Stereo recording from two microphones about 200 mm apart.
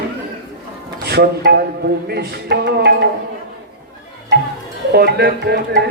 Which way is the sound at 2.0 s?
55° right (ahead or behind).